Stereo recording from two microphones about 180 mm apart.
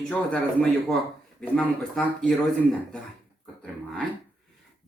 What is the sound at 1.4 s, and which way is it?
Speech, 5° left (ahead or behind).